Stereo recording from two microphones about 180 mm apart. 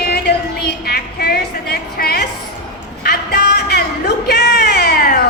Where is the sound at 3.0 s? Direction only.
65° left (ahead or behind).